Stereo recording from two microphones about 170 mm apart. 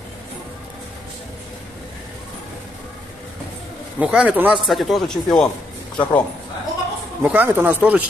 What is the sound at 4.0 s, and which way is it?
A man's voice, 5° right (ahead or behind).